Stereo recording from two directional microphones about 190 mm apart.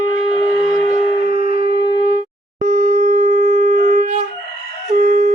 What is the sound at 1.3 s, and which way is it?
Shofar, 35° right (ahead or behind).